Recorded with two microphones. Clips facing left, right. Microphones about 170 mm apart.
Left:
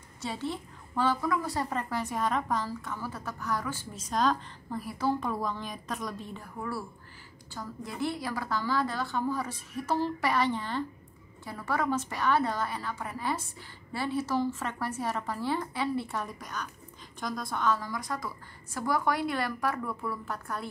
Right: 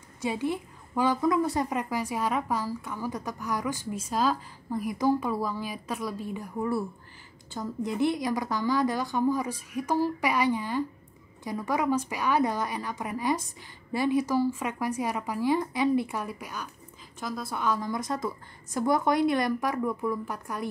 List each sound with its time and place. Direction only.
0.2 s a woman's voice: 15° right (ahead or behind)
7.5 s a woman's voice: 20° right (ahead or behind)